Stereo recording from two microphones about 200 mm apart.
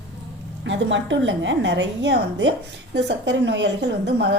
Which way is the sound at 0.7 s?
65° right (ahead or behind).